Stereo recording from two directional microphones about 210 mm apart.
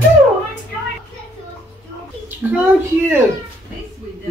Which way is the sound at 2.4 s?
10° right (ahead or behind).